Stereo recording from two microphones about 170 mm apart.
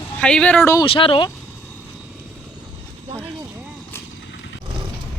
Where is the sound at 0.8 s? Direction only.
30° left (ahead or behind).